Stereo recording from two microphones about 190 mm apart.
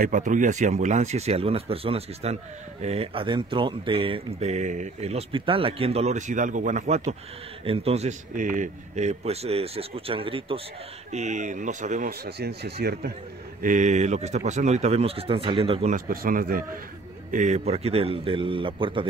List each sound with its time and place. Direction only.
0.0 s speech: 40° right (ahead or behind)
12.1 s speech: 60° right (ahead or behind)
13.6 s speech: 45° right (ahead or behind)
15.9 s a man's voice: 50° right (ahead or behind); by 19.0 s 25° right (ahead or behind)